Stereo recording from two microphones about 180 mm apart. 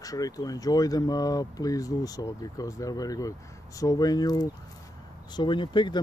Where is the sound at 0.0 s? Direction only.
20° left (ahead or behind).